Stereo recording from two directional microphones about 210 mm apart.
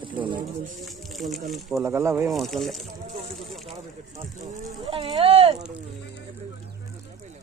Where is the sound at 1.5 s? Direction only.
Centre (ahead or behind).